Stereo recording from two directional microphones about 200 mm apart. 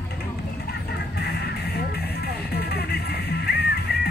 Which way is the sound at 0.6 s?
55° left (ahead or behind).